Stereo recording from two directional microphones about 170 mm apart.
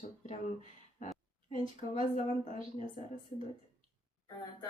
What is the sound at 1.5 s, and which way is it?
Speech, 45° left (ahead or behind).